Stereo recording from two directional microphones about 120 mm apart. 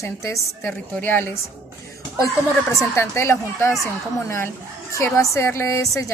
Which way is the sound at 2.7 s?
25° left (ahead or behind).